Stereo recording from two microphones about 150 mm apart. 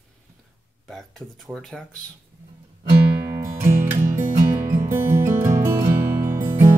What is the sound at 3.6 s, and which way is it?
Music, 15° right (ahead or behind).